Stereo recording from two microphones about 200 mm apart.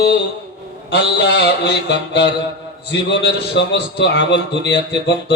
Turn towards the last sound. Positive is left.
turn(degrees=60)  # may be behind; listen again after turning